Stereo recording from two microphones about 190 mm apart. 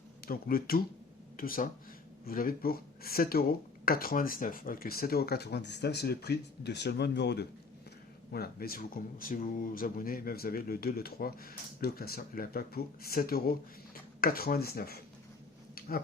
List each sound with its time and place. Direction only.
0.3 s speech: 50° left (ahead or behind)